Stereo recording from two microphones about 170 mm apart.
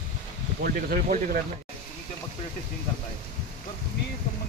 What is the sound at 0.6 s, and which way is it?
Speech, 65° right (ahead or behind).